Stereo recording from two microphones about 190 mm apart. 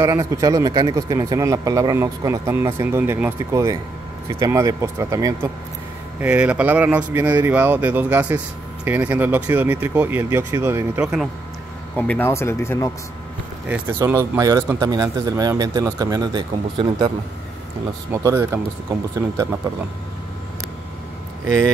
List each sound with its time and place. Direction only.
0.0 s speech: 15° right (ahead or behind)
12.1 s speech: 10° left (ahead or behind)
13.7 s speech: 10° right (ahead or behind)
18.1 s speech: 15° right (ahead or behind)